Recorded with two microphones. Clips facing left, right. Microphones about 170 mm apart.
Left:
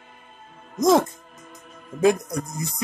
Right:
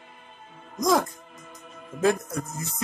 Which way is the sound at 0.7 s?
25° left (ahead or behind).